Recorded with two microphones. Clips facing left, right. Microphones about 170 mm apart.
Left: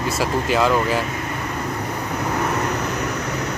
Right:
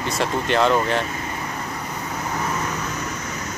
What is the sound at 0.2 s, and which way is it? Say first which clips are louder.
Speech: even; 5° left (ahead or behind).